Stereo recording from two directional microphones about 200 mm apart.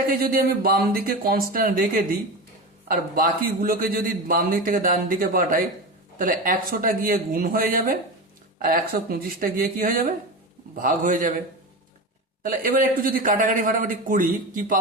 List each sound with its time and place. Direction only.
0.0 s a man's voice: 45° right (ahead or behind)
12.4 s a man's voice: 45° right (ahead or behind)